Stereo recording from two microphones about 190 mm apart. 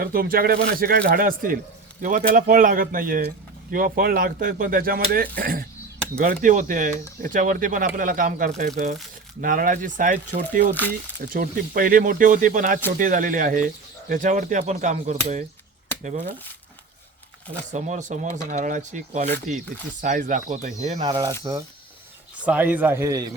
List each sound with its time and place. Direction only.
0.0 s speech: 50° right (ahead or behind)
17.7 s speech: 40° right (ahead or behind)
21.0 s speech: 20° right (ahead or behind)
22.4 s a man's voice: 10° right (ahead or behind)